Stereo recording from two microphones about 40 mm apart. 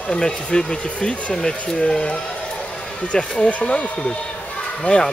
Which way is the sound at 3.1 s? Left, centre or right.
Left.